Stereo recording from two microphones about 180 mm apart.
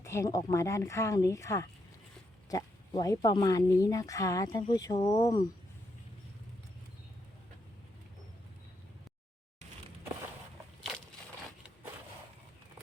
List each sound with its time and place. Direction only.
0.0 s speech: 15° left (ahead or behind)